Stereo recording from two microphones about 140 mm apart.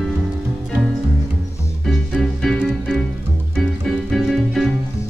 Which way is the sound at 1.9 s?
5° left (ahead or behind).